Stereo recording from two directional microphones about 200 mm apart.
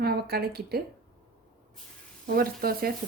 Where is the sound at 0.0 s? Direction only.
50° right (ahead or behind).